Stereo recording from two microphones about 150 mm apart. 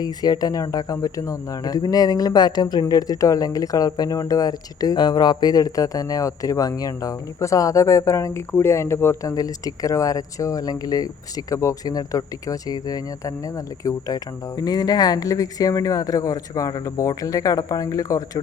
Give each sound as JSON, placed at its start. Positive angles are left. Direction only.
{"t": 0.0, "sound": "speech", "side_deg": 25}